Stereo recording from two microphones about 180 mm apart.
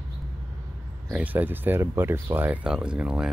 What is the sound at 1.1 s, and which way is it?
Speech, 10° right (ahead or behind).